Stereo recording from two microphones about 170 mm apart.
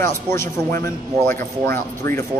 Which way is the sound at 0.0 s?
15° left (ahead or behind).